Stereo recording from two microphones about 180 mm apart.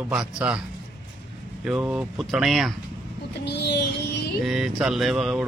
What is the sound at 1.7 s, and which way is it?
Speech, 5° right (ahead or behind).